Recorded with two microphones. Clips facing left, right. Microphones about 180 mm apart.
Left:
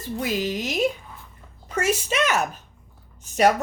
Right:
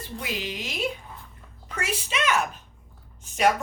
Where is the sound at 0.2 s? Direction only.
40° left (ahead or behind).